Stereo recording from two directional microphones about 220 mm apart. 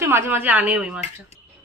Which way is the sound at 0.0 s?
10° right (ahead or behind).